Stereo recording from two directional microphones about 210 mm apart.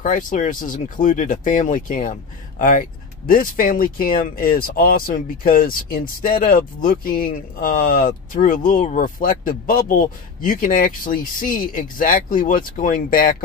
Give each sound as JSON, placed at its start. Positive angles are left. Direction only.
{"t": 0.0, "sound": "speech", "side_deg": 40}